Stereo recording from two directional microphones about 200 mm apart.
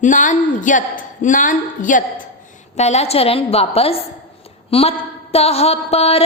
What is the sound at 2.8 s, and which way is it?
A woman's voice, 35° left (ahead or behind).